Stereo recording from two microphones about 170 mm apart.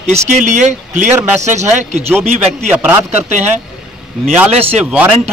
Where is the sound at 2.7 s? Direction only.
10° right (ahead or behind).